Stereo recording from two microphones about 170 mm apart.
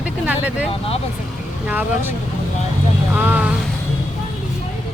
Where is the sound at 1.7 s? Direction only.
10° right (ahead or behind).